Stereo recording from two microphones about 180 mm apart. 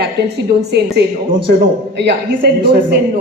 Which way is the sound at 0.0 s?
65° right (ahead or behind).